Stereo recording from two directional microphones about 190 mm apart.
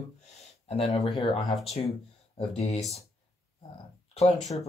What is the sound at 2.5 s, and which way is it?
Speech, 35° left (ahead or behind).